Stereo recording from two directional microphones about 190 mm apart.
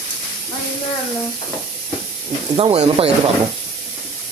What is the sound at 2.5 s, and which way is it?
Speech, 30° right (ahead or behind).